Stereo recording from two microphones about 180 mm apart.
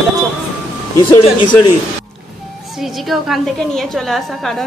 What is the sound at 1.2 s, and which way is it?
Speech, 30° left (ahead or behind).